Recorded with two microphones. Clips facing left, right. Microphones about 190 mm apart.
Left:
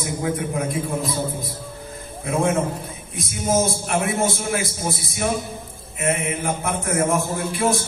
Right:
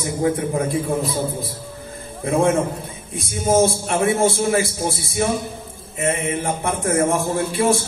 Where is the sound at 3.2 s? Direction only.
30° right (ahead or behind).